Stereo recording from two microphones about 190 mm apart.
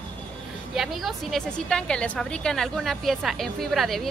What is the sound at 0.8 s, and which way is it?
A woman's voice, centre (ahead or behind).